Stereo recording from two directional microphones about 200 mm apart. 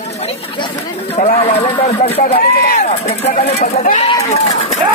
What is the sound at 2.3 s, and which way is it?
Speech, 50° left (ahead or behind).